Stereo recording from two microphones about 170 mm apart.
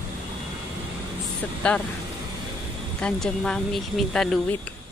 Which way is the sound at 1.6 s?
5° left (ahead or behind).